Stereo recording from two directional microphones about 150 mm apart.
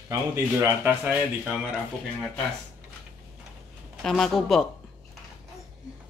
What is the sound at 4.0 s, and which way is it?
Speech, centre (ahead or behind).